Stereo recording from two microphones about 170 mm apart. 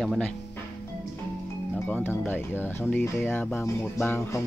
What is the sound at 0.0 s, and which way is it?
Speech, centre (ahead or behind).